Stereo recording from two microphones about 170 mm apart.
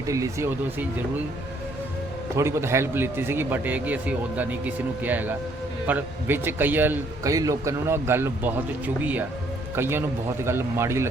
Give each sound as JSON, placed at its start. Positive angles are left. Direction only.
{"t": 0.0, "sound": "speech", "side_deg": -20}
{"t": 2.3, "sound": "a man's voice", "side_deg": -15}
{"t": 9.7, "sound": "a man's voice", "side_deg": -15}